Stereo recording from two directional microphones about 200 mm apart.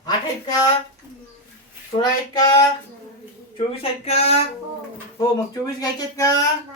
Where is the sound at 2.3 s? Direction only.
20° left (ahead or behind).